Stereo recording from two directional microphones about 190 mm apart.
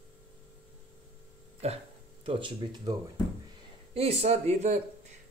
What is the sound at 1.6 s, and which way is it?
Speech, 35° right (ahead or behind).